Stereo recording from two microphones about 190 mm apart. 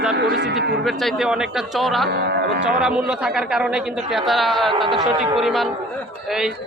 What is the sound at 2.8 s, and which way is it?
Speech, 5° right (ahead or behind).